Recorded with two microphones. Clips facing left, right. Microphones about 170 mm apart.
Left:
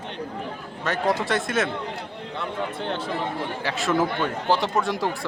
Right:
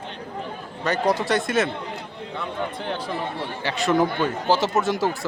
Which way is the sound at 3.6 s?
Centre (ahead or behind).